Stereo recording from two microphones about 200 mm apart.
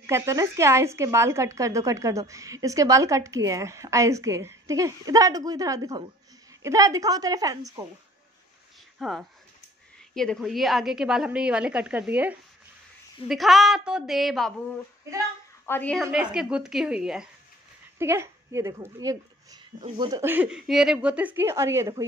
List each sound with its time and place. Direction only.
0.0 s a woman's voice: 15° right (ahead or behind)
9.0 s a woman's voice: centre (ahead or behind)
15.6 s a woman's voice: 10° left (ahead or behind); by 22.0 s 15° right (ahead or behind)